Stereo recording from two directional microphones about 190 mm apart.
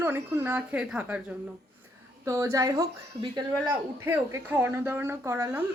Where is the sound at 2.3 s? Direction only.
15° right (ahead or behind).